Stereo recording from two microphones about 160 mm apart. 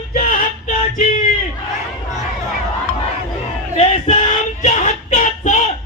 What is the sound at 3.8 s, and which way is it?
Female singing, 40° left (ahead or behind).